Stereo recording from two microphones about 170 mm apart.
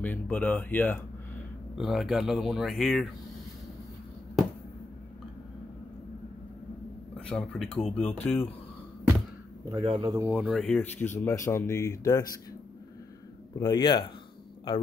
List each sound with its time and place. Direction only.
0.0 s speech: 10° left (ahead or behind)
1.8 s speech: centre (ahead or behind)
7.2 s speech: 5° left (ahead or behind)
9.7 s speech: 25° right (ahead or behind)
10.1 s speech: 10° right (ahead or behind); by 12.3 s 20° left (ahead or behind)
13.6 s speech: 25° left (ahead or behind)